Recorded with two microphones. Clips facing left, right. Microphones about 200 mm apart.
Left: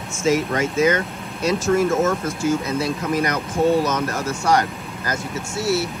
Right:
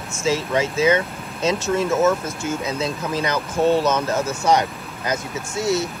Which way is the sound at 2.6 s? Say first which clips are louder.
Left 2 dB; 25° right (ahead or behind).